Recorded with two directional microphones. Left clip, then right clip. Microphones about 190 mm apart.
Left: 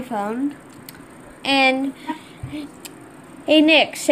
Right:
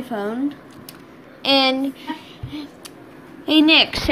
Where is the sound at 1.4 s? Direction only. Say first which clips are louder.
Even; centre (ahead or behind).